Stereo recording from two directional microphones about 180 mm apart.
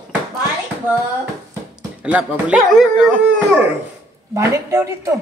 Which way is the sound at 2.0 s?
5° right (ahead or behind).